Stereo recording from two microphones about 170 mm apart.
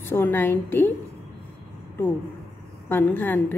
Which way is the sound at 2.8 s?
10° left (ahead or behind).